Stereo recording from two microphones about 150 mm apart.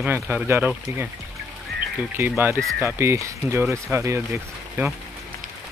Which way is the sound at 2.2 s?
15° right (ahead or behind).